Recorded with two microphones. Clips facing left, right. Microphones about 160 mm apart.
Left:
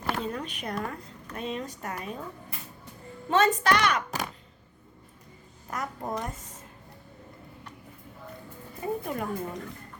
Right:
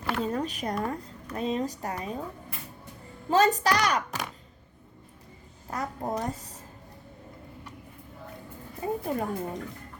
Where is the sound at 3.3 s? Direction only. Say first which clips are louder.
Right 1 dB; 35° right (ahead or behind).